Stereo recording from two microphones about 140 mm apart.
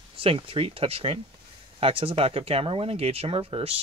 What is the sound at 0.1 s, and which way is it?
Speech, 40° right (ahead or behind).